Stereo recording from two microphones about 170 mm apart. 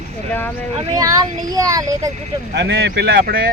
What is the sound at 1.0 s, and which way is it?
Speech, 20° right (ahead or behind).